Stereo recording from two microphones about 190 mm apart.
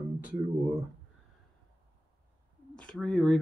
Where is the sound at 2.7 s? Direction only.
5° left (ahead or behind).